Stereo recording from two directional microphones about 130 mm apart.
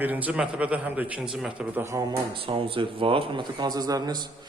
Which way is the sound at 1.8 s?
25° right (ahead or behind).